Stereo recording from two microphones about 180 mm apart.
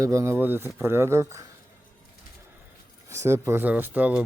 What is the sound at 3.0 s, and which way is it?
Speech, 15° right (ahead or behind).